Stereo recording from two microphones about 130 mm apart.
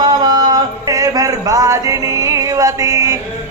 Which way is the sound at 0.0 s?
35° right (ahead or behind).